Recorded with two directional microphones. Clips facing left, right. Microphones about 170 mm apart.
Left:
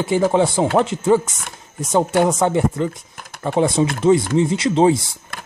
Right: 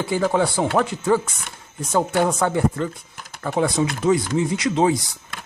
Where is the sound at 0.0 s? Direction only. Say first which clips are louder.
Left 4 dB; 20° left (ahead or behind).